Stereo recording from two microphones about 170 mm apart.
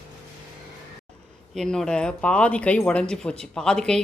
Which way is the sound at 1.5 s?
5° left (ahead or behind).